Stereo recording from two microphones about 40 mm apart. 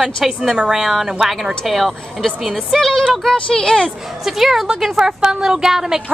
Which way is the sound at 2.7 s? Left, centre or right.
Centre.